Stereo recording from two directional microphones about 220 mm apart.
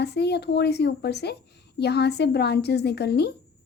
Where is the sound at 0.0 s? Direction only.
50° left (ahead or behind).